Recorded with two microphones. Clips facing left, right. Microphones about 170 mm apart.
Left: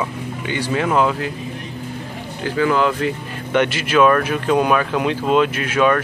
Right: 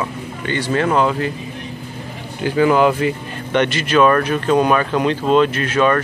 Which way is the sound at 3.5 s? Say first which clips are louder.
Right 1 dB; 5° left (ahead or behind).